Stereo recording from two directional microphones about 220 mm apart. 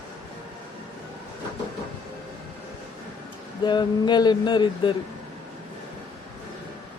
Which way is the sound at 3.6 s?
20° left (ahead or behind).